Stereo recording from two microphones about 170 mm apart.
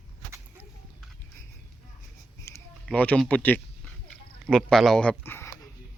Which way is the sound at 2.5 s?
15° left (ahead or behind).